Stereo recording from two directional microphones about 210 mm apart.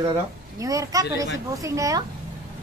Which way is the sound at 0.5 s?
15° right (ahead or behind).